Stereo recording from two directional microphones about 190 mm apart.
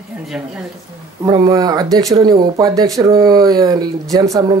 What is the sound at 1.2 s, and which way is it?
Speech, 20° right (ahead or behind).